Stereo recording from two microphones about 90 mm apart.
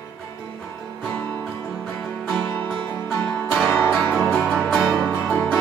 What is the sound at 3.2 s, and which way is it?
Music, 15° left (ahead or behind).